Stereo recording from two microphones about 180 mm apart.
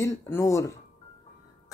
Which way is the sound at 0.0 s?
15° left (ahead or behind).